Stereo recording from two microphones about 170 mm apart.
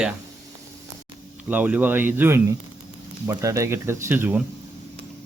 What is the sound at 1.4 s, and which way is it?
Speech, 10° right (ahead or behind).